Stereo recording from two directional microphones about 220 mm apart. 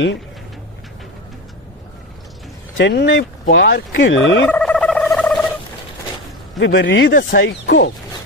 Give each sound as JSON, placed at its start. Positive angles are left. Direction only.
{"t": 2.8, "sound": "fowl", "side_deg": 50}
{"t": 4.5, "sound": "a sound", "side_deg": 5}
{"t": 6.6, "sound": "fowl", "side_deg": 55}
{"t": 7.2, "sound": "speech", "side_deg": 45}